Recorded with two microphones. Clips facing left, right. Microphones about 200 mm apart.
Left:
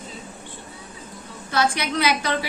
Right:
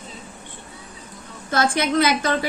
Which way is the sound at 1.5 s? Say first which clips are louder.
Right 3 dB; 50° right (ahead or behind).